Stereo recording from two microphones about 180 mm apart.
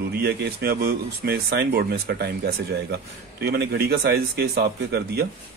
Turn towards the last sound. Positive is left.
turn(degrees=-65)  # may be behind; listen again after turning